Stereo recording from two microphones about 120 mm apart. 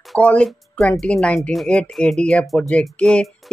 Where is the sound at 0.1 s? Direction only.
10° left (ahead or behind).